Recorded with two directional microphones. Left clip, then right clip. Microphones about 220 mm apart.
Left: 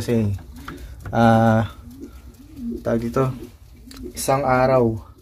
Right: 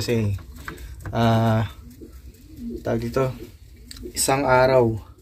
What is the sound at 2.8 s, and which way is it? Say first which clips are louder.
Speech: left 3 dB; 15° left (ahead or behind).